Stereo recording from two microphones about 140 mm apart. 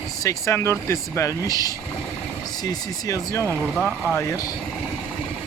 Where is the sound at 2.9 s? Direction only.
25° left (ahead or behind).